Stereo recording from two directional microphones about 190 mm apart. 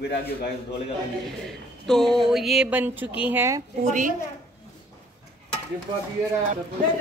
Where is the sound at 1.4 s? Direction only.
Centre (ahead or behind).